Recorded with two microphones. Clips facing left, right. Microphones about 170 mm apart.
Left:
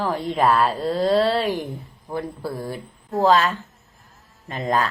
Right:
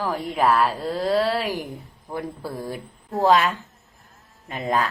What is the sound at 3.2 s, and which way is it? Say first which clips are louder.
A woman's voice: even; 10° right (ahead or behind).